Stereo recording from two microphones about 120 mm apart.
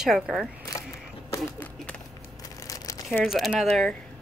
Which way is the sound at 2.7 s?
30° left (ahead or behind).